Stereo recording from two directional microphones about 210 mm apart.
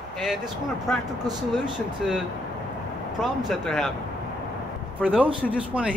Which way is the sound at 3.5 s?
Centre (ahead or behind).